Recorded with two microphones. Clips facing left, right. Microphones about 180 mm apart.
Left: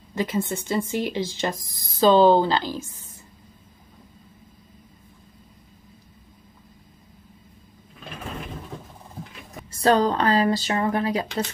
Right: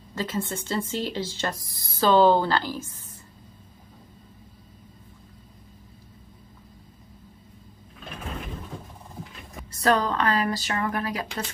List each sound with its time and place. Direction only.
0.1 s speech: 15° left (ahead or behind)
9.8 s speech: 30° left (ahead or behind)